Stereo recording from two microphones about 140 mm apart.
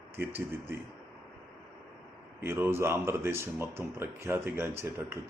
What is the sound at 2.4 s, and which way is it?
Speech, 20° right (ahead or behind).